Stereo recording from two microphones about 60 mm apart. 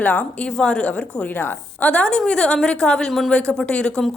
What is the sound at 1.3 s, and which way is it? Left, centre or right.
A woman's voice, left.